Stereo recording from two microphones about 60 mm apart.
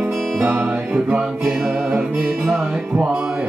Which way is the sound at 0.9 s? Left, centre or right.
Centre.